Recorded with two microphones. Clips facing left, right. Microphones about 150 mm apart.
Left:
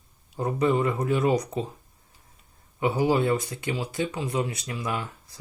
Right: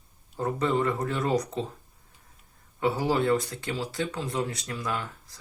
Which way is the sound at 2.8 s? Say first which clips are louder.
Left 2 dB; 20° left (ahead or behind).